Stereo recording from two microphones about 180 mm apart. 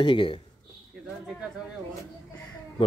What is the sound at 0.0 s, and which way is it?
Speech, 30° left (ahead or behind).